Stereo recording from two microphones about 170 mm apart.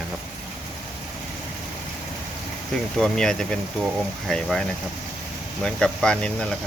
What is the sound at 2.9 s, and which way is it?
Speech, 5° left (ahead or behind).